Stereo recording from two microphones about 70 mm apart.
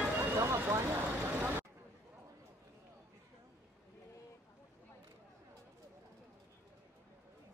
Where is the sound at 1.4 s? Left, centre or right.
Right.